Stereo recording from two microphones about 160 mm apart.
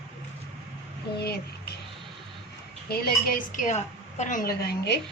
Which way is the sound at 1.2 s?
90° left.